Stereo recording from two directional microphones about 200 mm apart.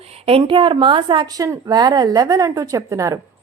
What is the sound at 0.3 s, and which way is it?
A woman's voice, 25° right (ahead or behind).